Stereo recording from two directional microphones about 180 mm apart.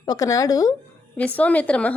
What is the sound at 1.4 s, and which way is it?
Speech, 10° left (ahead or behind).